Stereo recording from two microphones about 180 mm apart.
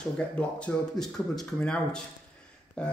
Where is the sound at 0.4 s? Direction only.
5° left (ahead or behind).